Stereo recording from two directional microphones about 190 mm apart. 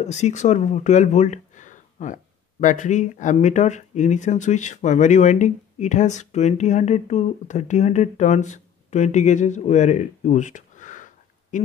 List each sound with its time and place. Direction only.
0.0 s speech: 35° left (ahead or behind)